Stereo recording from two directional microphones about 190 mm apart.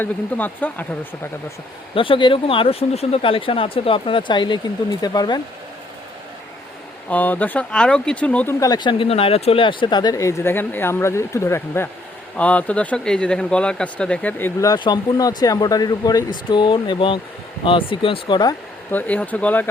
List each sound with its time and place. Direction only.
0.0 s speech: 10° left (ahead or behind)
2.0 s speech: 25° left (ahead or behind)
7.1 s speech: 10° left (ahead or behind)
8.6 s speech: 20° left (ahead or behind)
18.9 s speech: 10° left (ahead or behind)